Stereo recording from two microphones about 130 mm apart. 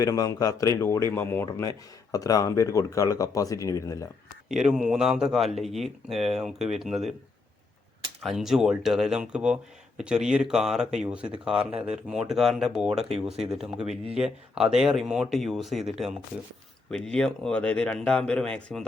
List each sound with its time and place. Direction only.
0.0 s speech: 30° left (ahead or behind)
2.1 s speech: 30° left (ahead or behind)
4.4 s speech: 5° right (ahead or behind)
8.2 s speech: centre (ahead or behind)